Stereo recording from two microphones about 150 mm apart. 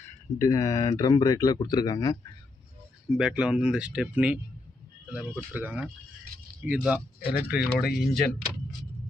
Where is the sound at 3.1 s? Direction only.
5° right (ahead or behind).